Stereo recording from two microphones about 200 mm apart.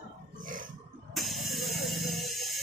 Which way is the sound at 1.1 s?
Centre (ahead or behind).